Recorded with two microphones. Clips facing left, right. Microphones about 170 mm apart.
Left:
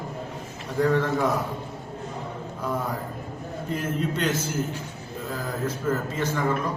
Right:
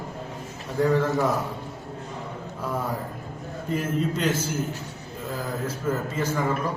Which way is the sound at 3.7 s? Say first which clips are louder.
Right 2 dB; 10° right (ahead or behind).